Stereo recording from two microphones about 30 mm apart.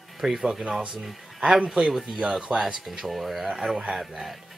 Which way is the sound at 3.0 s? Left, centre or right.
Centre.